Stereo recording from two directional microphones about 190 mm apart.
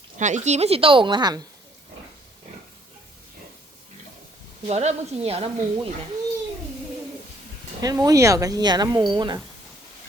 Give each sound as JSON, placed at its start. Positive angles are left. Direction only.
{"t": 0.2, "sound": "a woman's voice", "side_deg": -40}
{"t": 4.7, "sound": "a woman's voice", "side_deg": -35}
{"t": 7.8, "sound": "speech", "side_deg": -20}